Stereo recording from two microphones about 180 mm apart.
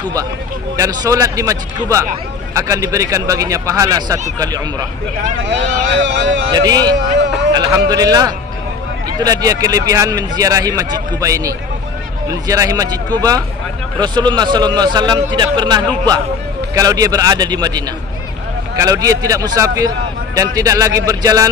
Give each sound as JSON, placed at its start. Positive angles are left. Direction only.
{"t": 0.7, "sound": "speech", "side_deg": -20}
{"t": 5.5, "sound": "speech", "side_deg": -80}
{"t": 6.5, "sound": "speech", "side_deg": -20}